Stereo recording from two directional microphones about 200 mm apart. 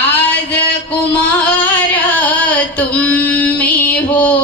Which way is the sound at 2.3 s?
5° left (ahead or behind).